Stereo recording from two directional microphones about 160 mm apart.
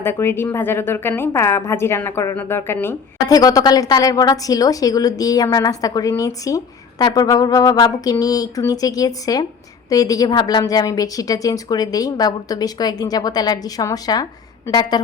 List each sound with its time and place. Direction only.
0.0 s a woman's voice: 15° left (ahead or behind)